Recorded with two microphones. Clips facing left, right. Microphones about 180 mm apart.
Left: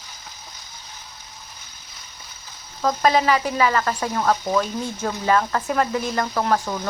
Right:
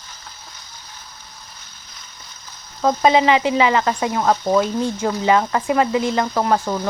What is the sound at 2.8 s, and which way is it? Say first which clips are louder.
Speech: right 4 dB; 20° right (ahead or behind).